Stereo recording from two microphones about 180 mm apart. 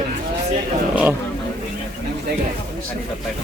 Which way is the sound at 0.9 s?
10° right (ahead or behind).